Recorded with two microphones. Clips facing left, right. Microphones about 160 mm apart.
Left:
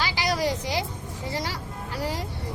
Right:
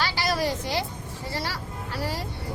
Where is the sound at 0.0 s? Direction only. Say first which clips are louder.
Even; 15° left (ahead or behind).